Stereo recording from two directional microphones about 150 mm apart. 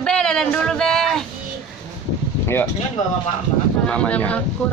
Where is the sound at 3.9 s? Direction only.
10° left (ahead or behind).